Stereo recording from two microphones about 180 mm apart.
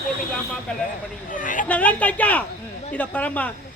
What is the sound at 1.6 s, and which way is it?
A man's voice, 10° left (ahead or behind).